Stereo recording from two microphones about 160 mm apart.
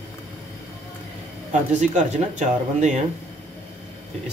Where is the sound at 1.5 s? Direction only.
50° right (ahead or behind).